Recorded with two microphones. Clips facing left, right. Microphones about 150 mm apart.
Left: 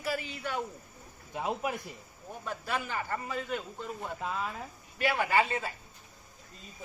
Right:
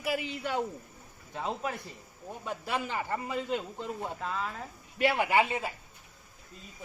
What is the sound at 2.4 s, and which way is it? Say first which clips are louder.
Speech: right 1 dB; 20° right (ahead or behind).